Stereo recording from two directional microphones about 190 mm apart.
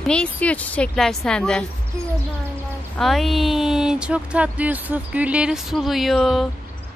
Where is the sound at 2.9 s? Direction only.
Centre (ahead or behind).